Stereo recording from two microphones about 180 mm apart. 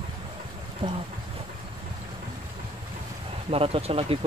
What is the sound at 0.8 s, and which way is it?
Speech, 25° right (ahead or behind).